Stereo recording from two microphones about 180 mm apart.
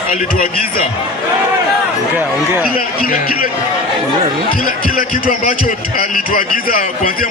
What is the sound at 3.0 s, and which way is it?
Speech, 55° left (ahead or behind).